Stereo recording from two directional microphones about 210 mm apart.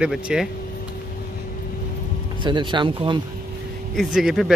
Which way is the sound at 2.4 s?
20° right (ahead or behind).